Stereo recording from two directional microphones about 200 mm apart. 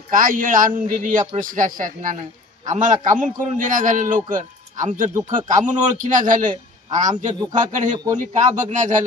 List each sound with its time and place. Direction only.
0.1 s a man's voice: 45° right (ahead or behind)